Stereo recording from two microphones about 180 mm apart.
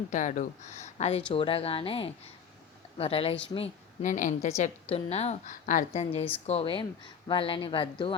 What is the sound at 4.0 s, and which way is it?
A woman's voice, 45° left (ahead or behind).